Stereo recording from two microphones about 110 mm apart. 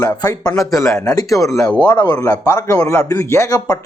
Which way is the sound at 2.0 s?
35° left (ahead or behind).